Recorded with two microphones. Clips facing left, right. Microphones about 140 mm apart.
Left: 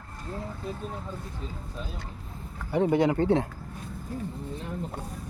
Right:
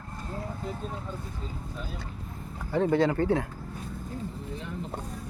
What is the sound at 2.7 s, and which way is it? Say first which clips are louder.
Speech: left 1 dB; 15° left (ahead or behind).